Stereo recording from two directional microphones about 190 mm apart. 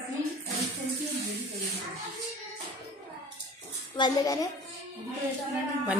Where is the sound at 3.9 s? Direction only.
20° left (ahead or behind).